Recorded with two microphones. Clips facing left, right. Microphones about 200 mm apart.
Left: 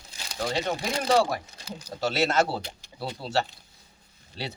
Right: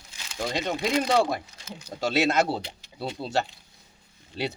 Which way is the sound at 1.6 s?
35° left (ahead or behind).